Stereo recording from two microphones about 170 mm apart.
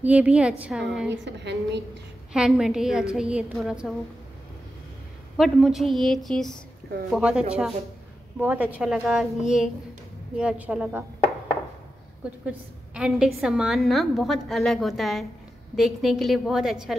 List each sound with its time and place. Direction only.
0.0 s a woman's voice: 10° right (ahead or behind)
1.1 s a woman's voice: 90° right
2.3 s a woman's voice: 5° right (ahead or behind)
5.4 s a woman's voice: centre (ahead or behind)
12.4 s a woman's voice: 5° right (ahead or behind)